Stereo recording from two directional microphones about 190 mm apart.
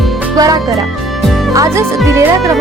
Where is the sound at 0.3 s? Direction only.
20° right (ahead or behind).